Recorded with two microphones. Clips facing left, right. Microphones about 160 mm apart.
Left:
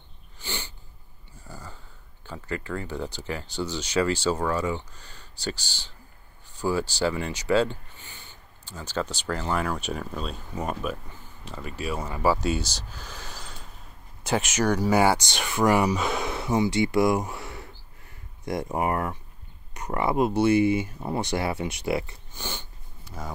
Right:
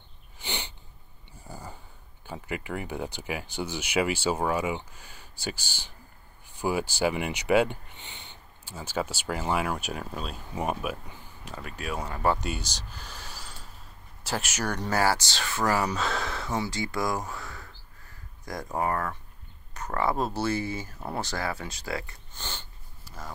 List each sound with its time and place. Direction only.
0.4 s sniff: 20° right (ahead or behind)
1.5 s a sound: 15° right (ahead or behind)
2.2 s speech: 15° right (ahead or behind)
8.6 s speech: 10° right (ahead or behind)
13.0 s a sound: 5° right (ahead or behind)
14.2 s speech: 5° right (ahead or behind)
14.7 s speech: 10° left (ahead or behind)